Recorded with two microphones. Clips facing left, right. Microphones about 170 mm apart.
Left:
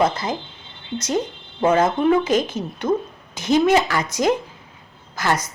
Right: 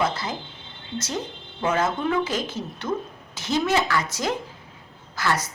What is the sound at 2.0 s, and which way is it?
A woman's voice, 20° left (ahead or behind).